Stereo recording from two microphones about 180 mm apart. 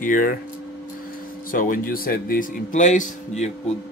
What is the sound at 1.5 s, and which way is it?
A man's voice, 50° left (ahead or behind).